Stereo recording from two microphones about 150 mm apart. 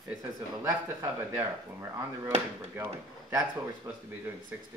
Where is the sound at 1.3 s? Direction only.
15° right (ahead or behind).